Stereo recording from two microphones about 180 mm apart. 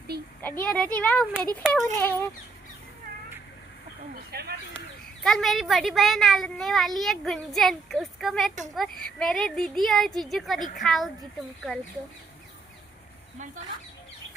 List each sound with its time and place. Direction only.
0.4 s speech: 10° left (ahead or behind)
4.1 s a sound: 60° right (ahead or behind)
5.2 s a child's voice: centre (ahead or behind)